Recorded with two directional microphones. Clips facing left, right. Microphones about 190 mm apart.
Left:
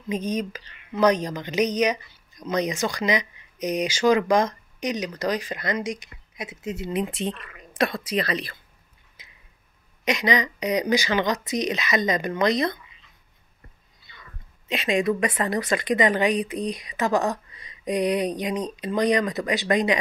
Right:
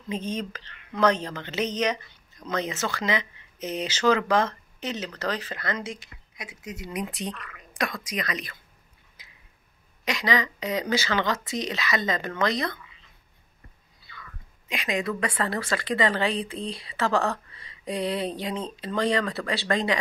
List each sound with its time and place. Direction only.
0.1 s speech: 10° left (ahead or behind); by 8.5 s 30° left (ahead or behind)
9.2 s a sound: 20° left (ahead or behind)
10.0 s speech: 20° left (ahead or behind)
14.7 s speech: 25° left (ahead or behind)